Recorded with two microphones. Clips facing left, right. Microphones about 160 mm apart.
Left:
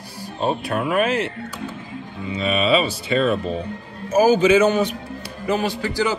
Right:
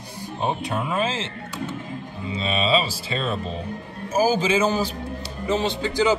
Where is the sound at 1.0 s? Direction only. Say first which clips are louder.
Left 5 dB; 25° right (ahead or behind).